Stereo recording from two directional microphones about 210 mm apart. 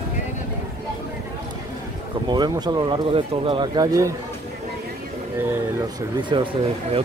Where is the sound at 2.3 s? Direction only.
20° right (ahead or behind).